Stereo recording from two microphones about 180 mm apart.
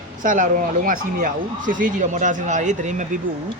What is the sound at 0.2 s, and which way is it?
Speech, 45° right (ahead or behind).